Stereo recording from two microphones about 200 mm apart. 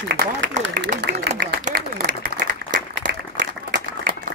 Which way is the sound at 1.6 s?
40° right (ahead or behind).